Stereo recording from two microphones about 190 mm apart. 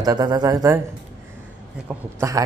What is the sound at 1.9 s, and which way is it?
Speech, 15° right (ahead or behind).